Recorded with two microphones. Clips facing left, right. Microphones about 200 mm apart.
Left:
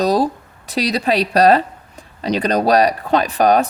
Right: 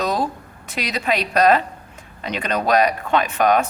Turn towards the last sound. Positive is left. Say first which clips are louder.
# left 3 dB
turn(degrees=35)  # may be behind; listen again after turning